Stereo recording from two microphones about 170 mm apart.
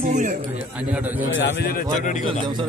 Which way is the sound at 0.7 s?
5° right (ahead or behind).